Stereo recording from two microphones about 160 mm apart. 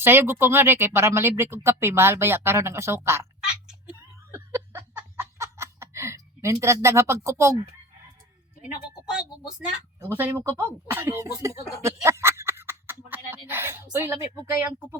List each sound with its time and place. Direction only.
0.0 s speech: 15° right (ahead or behind)
3.7 s giggle: 10° right (ahead or behind)
6.8 s speech: 20° right (ahead or behind)
9.1 s speech: 5° right (ahead or behind)
11.8 s a sound: 15° right (ahead or behind)
14.0 s speech: 15° right (ahead or behind)